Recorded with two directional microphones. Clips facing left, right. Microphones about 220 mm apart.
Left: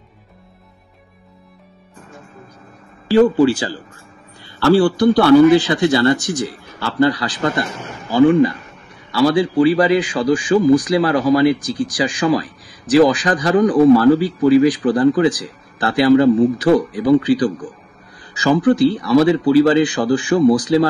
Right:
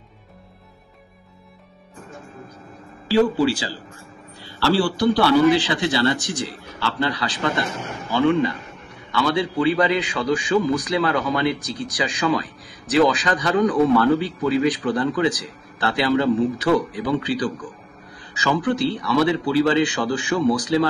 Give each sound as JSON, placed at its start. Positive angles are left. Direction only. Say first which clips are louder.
{"t": 3.1, "sound": "a man's voice", "louder": "left 6 dB", "side_deg": 50}
{"t": 18.4, "sound": "a man's voice", "louder": "left 8 dB", "side_deg": 35}